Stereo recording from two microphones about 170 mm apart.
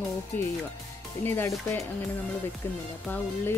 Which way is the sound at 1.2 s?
15° left (ahead or behind).